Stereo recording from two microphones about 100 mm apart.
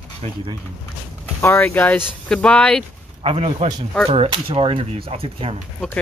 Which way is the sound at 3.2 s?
75° right (ahead or behind).